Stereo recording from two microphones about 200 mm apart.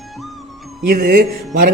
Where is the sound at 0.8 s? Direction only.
50° right (ahead or behind).